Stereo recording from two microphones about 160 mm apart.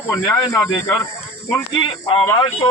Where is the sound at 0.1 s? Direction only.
20° left (ahead or behind).